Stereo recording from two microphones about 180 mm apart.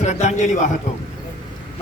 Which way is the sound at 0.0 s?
40° left (ahead or behind).